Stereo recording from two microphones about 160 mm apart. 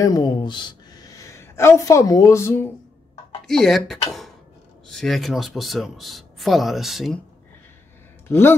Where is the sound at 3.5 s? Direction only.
Centre (ahead or behind).